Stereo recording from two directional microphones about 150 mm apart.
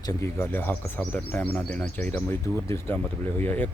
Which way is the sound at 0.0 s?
20° left (ahead or behind).